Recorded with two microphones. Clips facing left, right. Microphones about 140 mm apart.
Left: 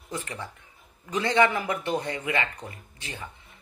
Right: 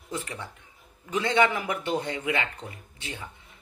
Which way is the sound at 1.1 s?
15° right (ahead or behind).